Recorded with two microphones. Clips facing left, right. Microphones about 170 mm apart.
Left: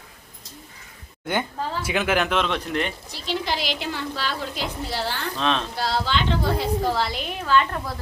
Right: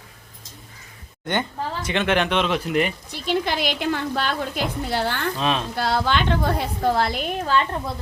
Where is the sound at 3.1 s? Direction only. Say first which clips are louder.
Right 4 dB; 55° right (ahead or behind).